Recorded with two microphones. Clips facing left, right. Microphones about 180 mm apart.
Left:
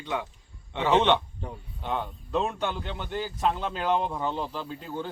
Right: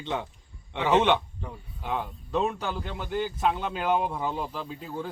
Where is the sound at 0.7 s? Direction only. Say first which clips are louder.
Even; 10° right (ahead or behind).